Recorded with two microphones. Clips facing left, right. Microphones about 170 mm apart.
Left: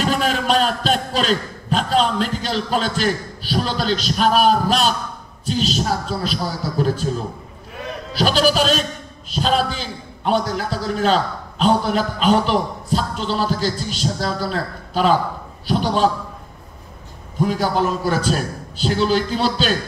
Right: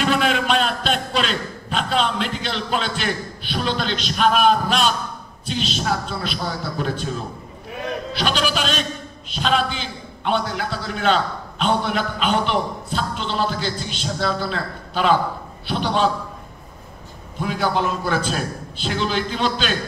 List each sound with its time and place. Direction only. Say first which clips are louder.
0.0 s a man's voice: even; 40° left (ahead or behind)
8.1 s a man's voice: left 7 dB; 40° left (ahead or behind)
17.4 s a man's voice: left 3 dB; 40° left (ahead or behind)